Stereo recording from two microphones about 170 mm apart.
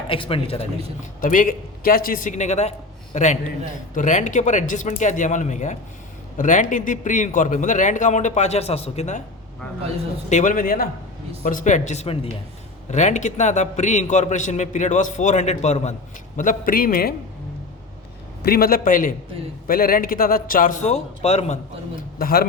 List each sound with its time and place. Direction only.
0.1 s a man's voice: 30° left (ahead or behind)
1.2 s a man's voice: 50° left (ahead or behind)
10.2 s a man's voice: 45° left (ahead or behind)
12.9 s a man's voice: 45° left (ahead or behind)
16.4 s a man's voice: 55° left (ahead or behind)
18.4 s a man's voice: 60° left (ahead or behind); by 21.6 s 40° left (ahead or behind)
22.2 s a man's voice: 60° left (ahead or behind)